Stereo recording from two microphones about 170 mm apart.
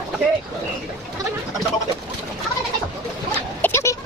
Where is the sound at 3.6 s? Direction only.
15° left (ahead or behind).